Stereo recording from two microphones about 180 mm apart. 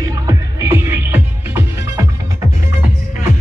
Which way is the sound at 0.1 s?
20° right (ahead or behind).